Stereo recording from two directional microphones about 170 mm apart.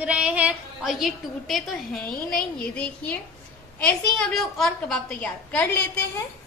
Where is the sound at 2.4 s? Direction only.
5° left (ahead or behind).